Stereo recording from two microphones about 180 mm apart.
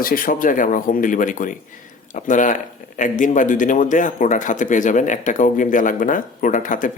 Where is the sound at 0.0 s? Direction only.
50° left (ahead or behind).